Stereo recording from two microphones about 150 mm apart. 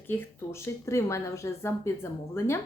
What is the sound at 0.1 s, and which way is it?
Speech, 15° left (ahead or behind).